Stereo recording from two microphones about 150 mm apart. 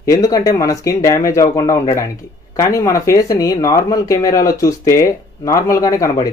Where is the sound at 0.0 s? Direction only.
20° left (ahead or behind).